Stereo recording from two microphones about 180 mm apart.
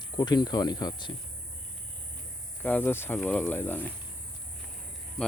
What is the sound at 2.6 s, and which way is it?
Speech, 10° left (ahead or behind).